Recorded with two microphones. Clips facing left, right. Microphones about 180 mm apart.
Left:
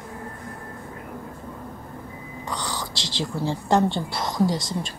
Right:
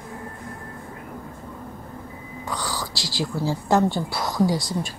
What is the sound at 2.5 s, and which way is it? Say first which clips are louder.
Whispering: right 1 dB; 20° left (ahead or behind).